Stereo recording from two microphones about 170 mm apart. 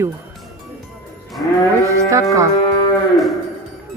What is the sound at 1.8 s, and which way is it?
Music, 20° right (ahead or behind).